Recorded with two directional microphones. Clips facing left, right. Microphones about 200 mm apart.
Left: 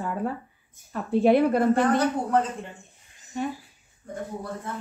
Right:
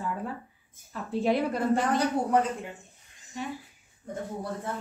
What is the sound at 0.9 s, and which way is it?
Speech, 60° left (ahead or behind).